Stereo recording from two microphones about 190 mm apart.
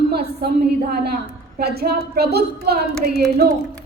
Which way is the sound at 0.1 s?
55° right (ahead or behind).